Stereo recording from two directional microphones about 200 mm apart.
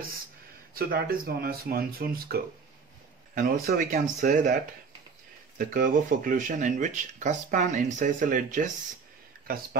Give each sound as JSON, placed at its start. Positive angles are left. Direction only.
{"t": 0.7, "sound": "speech", "side_deg": -50}
{"t": 5.6, "sound": "speech", "side_deg": -45}